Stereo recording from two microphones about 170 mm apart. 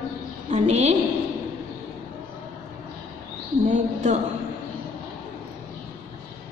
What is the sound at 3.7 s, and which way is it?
Speech, 45° right (ahead or behind).